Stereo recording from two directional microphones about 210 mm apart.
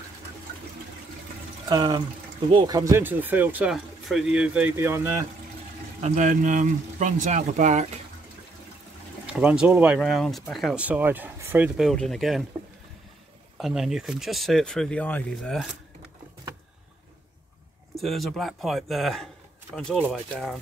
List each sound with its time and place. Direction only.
1.7 s speech: 20° right (ahead or behind)
5.9 s speech: 35° right (ahead or behind)
9.2 s speech: 5° right (ahead or behind)
13.6 s speech: centre (ahead or behind)
17.9 s speech: centre (ahead or behind)